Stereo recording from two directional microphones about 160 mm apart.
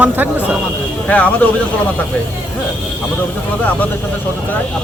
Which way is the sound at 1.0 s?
10° left (ahead or behind).